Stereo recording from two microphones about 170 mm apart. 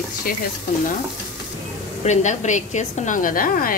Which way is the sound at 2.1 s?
45° left (ahead or behind).